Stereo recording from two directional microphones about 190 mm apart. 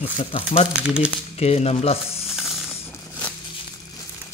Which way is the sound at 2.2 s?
Centre (ahead or behind).